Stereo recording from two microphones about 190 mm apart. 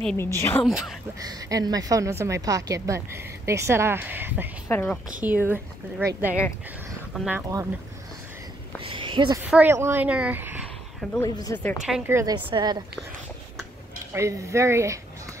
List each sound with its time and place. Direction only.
0.0 s a woman's voice: 10° left (ahead or behind)
0.7 s speech: centre (ahead or behind)
1.2 s a woman's voice: 20° right (ahead or behind)
4.6 s a woman's voice: 10° left (ahead or behind)
5.2 s a woman's voice: 10° right (ahead or behind)
8.8 s speech: 25° right (ahead or behind)
9.4 s a woman's voice: 10° right (ahead or behind)
11.1 s a woman's voice: 20° left (ahead or behind)
12.1 s a woman's voice: 15° right (ahead or behind)
14.1 s a woman's voice: 15° right (ahead or behind)